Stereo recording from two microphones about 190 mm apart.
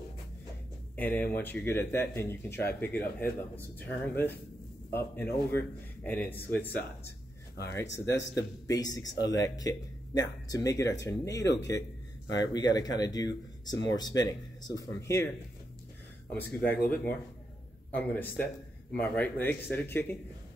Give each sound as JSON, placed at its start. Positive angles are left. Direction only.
{"t": 0.9, "sound": "speech", "side_deg": 10}
{"t": 16.3, "sound": "speech", "side_deg": 10}